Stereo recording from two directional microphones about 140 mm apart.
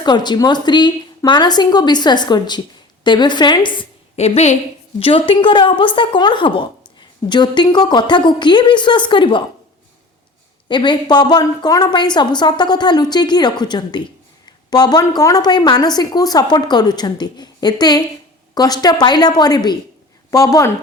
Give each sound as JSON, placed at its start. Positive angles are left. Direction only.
{"t": 0.0, "sound": "a woman's voice", "side_deg": 30}
{"t": 4.2, "sound": "a woman's voice", "side_deg": 50}
{"t": 4.9, "sound": "a woman's voice", "side_deg": 40}
{"t": 10.7, "sound": "a woman's voice", "side_deg": 35}